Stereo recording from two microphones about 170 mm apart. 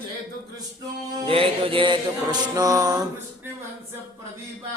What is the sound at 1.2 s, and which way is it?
Mantra, 30° right (ahead or behind).